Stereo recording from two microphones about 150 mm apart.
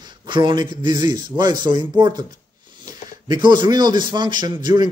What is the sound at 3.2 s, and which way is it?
A man's voice, 30° right (ahead or behind).